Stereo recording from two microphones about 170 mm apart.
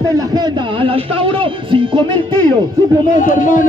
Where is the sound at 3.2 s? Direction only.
50° left (ahead or behind).